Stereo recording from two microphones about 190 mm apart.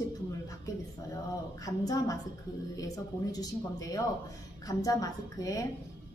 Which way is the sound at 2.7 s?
20° left (ahead or behind).